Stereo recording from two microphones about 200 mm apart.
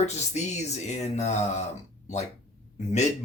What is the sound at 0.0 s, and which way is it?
Speech, 35° left (ahead or behind).